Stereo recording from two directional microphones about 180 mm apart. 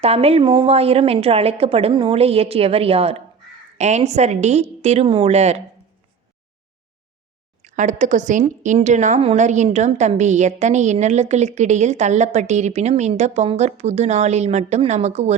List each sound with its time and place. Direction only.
0.0 s a woman's voice: 35° right (ahead or behind)
7.6 s a woman's voice: 40° right (ahead or behind)